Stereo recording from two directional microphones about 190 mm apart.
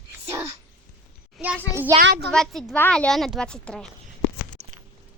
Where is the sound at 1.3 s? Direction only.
5° right (ahead or behind).